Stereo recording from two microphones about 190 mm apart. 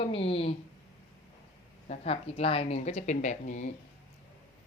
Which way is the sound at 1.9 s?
35° left (ahead or behind).